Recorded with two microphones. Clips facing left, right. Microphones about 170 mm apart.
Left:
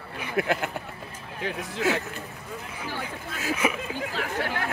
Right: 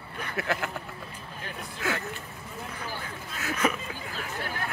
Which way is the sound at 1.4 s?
90° left.